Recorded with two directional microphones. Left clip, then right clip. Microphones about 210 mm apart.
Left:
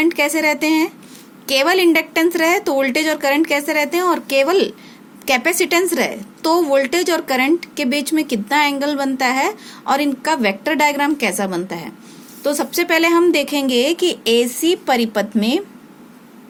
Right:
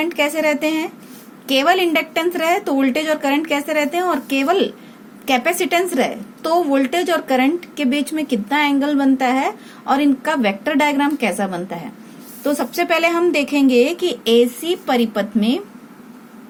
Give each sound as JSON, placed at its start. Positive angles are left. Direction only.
{"t": 0.0, "sound": "a woman's voice", "side_deg": 45}